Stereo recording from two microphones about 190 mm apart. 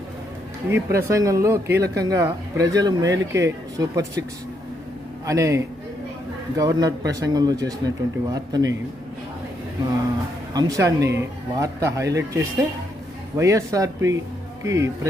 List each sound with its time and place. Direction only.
0.7 s speech: 15° right (ahead or behind)
5.2 s speech: 15° right (ahead or behind)
10.5 s speech: 20° right (ahead or behind)